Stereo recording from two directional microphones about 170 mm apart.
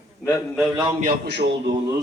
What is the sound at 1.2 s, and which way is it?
Speech, 80° right.